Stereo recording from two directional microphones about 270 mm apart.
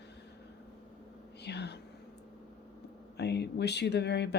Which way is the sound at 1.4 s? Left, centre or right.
Left.